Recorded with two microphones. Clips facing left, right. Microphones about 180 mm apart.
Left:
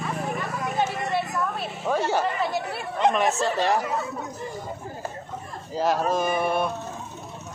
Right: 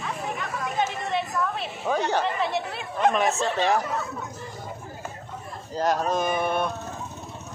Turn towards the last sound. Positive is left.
turn(degrees=5)  # may be behind; listen again after turning